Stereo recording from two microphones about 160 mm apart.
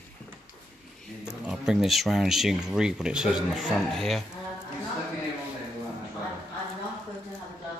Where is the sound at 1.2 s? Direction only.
5° right (ahead or behind).